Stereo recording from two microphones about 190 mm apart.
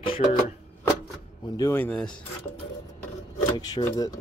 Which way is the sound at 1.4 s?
20° left (ahead or behind).